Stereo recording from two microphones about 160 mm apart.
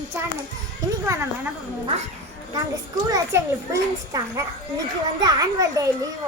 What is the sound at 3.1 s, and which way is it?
A child's voice, 20° right (ahead or behind).